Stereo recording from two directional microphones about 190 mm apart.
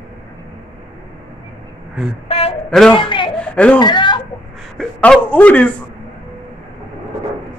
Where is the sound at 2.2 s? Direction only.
30° left (ahead or behind).